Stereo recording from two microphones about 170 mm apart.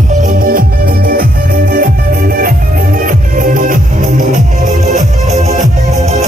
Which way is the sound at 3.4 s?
55° right (ahead or behind).